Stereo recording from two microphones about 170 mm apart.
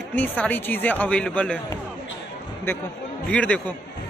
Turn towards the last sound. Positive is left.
turn(degrees=10)  # may be behind; listen again after turning